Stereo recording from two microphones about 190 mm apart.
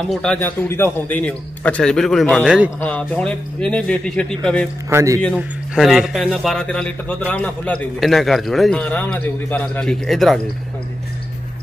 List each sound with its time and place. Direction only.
0.1 s speech: 5° left (ahead or behind)
2.8 s speech: 5° left (ahead or behind)
4.8 s a man's voice: 15° right (ahead or behind)
5.2 s speech: centre (ahead or behind)